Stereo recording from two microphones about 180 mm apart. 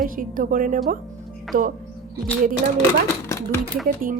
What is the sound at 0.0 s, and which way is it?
Music, 50° right (ahead or behind).